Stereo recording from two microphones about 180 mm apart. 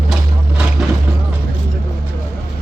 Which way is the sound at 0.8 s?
Centre (ahead or behind).